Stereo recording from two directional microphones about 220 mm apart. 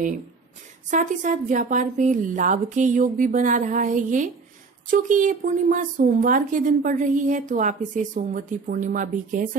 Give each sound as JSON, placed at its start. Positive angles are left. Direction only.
{"t": 0.8, "sound": "a woman's voice", "side_deg": -35}